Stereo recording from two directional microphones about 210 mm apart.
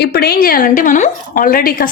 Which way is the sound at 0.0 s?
50° left (ahead or behind).